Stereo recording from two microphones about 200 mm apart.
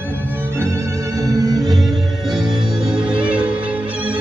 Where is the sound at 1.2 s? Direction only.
15° right (ahead or behind).